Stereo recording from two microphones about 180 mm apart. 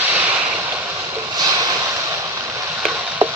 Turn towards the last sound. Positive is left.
turn(degrees=-10)  # may be behind; listen again after turning